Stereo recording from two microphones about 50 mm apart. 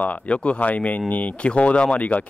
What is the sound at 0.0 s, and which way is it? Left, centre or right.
A man's voice, left.